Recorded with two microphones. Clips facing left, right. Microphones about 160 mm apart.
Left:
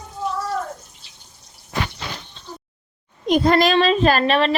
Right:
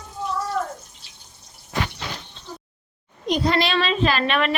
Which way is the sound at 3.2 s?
50° left (ahead or behind).